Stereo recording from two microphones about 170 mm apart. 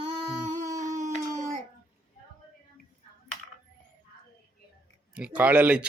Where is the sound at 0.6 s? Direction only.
20° right (ahead or behind).